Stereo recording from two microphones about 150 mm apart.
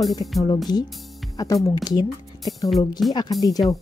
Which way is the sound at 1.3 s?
20° left (ahead or behind).